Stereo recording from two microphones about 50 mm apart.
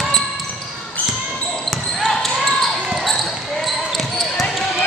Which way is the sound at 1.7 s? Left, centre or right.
Centre.